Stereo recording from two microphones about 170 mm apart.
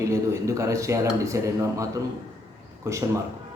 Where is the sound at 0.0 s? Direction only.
15° right (ahead or behind).